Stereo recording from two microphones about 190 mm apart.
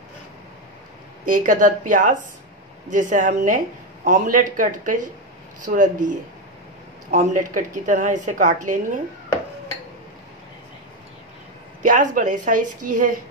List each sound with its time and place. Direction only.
1.2 s a woman's voice: 45° right (ahead or behind)
11.8 s speech: 40° right (ahead or behind)